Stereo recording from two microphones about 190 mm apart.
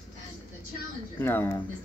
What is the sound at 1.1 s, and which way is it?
Speech, 10° left (ahead or behind).